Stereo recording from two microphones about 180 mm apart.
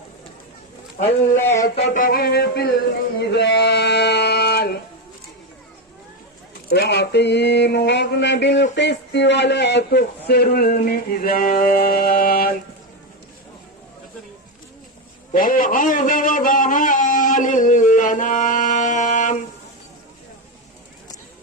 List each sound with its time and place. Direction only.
1.9 s a man's voice: 50° left (ahead or behind)
3.2 s speech: 75° left (ahead or behind)
6.7 s a sound: 65° left (ahead or behind)
8.7 s a man's voice: 70° left (ahead or behind); by 12.5 s 55° left (ahead or behind)
15.3 s a man's voice: 50° left (ahead or behind)